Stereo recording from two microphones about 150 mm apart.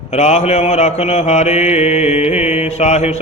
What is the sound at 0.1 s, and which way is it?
Mantra, 45° left (ahead or behind).